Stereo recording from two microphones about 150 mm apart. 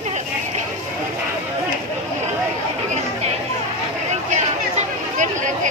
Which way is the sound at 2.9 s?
50° right (ahead or behind).